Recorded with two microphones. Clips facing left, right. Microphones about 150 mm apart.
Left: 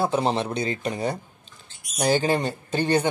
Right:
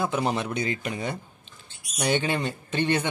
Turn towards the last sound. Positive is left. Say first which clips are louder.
# left 3 dB
turn(degrees=35)  # may be behind; listen again after turning